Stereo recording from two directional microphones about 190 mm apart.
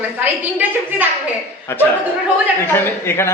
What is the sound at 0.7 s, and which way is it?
Speech, 10° right (ahead or behind).